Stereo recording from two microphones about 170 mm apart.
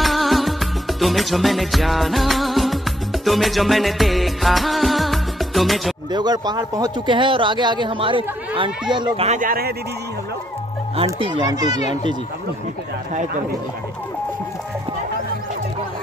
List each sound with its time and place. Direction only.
0.0 s music: centre (ahead or behind)
6.1 s speech: 25° right (ahead or behind)
9.4 s speech: 60° right (ahead or behind)
11.1 s speech: 30° right (ahead or behind)
11.8 s speech: 40° left (ahead or behind)
13.1 s speech: 45° right (ahead or behind)